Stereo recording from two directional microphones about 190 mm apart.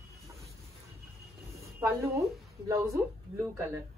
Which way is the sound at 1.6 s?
15° right (ahead or behind).